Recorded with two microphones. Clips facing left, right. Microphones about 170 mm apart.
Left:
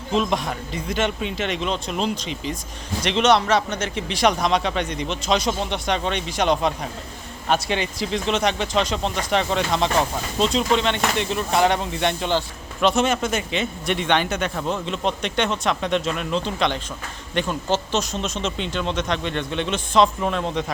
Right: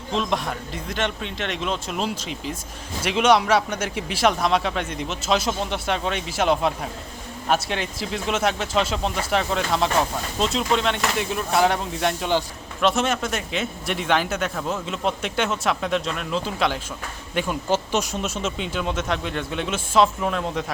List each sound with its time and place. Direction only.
0.1 s speech: centre (ahead or behind)